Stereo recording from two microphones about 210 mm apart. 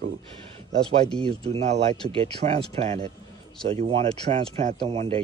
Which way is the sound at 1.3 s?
25° right (ahead or behind).